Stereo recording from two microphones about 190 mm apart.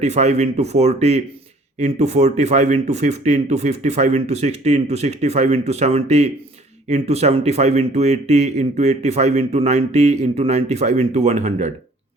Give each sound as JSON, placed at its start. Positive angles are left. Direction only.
{"t": 0.0, "sound": "speech", "side_deg": -35}